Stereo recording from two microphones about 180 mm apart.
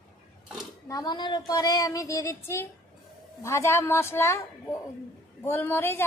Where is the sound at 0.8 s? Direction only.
20° left (ahead or behind).